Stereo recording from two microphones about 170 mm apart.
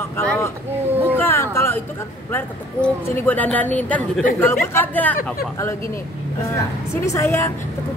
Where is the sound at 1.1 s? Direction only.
15° left (ahead or behind).